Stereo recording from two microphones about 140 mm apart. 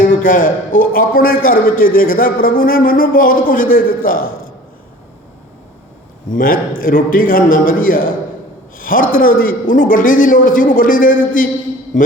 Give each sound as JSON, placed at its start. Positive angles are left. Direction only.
{"t": 0.0, "sound": "a man's voice", "side_deg": 75}
{"t": 6.2, "sound": "a man's voice", "side_deg": 80}